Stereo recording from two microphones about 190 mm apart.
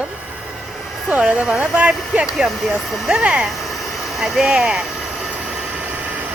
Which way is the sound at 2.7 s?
Centre (ahead or behind).